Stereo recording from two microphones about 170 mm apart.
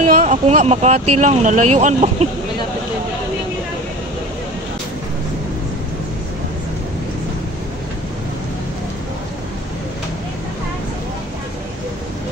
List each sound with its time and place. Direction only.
0.2 s speech: 40° right (ahead or behind)